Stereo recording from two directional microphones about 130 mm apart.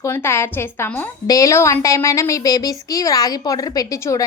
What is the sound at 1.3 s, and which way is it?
A woman's voice, 25° left (ahead or behind).